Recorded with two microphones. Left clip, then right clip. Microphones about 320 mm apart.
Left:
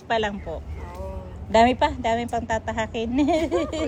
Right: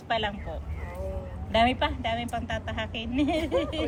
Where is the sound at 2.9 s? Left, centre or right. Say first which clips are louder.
Left 7 dB; left.